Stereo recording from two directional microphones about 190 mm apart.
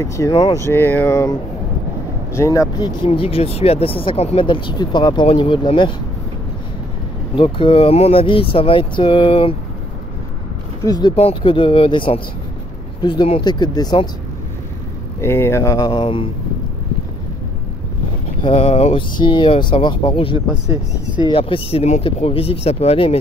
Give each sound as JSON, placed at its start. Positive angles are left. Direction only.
{"t": 0.0, "sound": "speech", "side_deg": 15}
{"t": 2.3, "sound": "speech", "side_deg": 15}
{"t": 3.1, "sound": "speech", "side_deg": 30}
{"t": 7.3, "sound": "speech", "side_deg": 30}
{"t": 10.9, "sound": "speech", "side_deg": 25}
{"t": 15.1, "sound": "speech", "side_deg": 15}
{"t": 18.4, "sound": "speech", "side_deg": 30}
{"t": 20.3, "sound": "speech", "side_deg": -20}
{"t": 21.3, "sound": "speech", "side_deg": 30}